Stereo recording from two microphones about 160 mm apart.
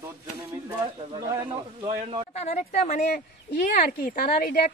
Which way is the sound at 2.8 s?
60° left (ahead or behind).